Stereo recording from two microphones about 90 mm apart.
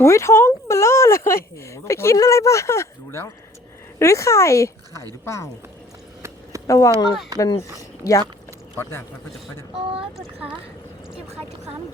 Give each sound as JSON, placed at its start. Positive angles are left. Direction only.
{"t": 0.0, "sound": "speech", "side_deg": 30}
{"t": 6.7, "sound": "speech", "side_deg": 35}
{"t": 8.8, "sound": "speech", "side_deg": 25}